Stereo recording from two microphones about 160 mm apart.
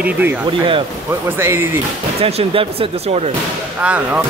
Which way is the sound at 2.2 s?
40° right (ahead or behind).